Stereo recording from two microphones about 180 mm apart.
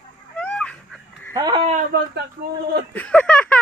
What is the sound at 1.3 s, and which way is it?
Speech, 20° right (ahead or behind).